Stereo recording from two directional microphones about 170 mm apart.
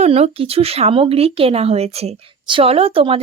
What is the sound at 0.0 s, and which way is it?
Speech, 35° right (ahead or behind).